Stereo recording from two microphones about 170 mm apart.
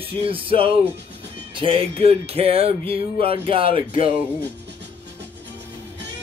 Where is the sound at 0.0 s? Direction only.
35° right (ahead or behind).